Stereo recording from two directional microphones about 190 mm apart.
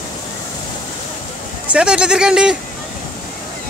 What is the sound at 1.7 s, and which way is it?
Speech, 5° right (ahead or behind).